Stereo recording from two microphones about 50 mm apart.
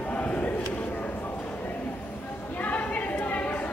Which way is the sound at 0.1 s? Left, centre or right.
Left.